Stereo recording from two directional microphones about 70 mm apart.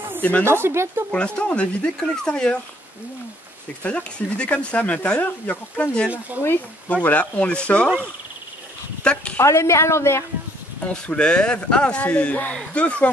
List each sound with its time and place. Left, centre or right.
0.2 s speech: left
0.5 s speech: right
1.1 s speech: centre
3.8 s speech: centre
9.0 s speech: centre
9.4 s a woman's voice: left
10.9 s speech: centre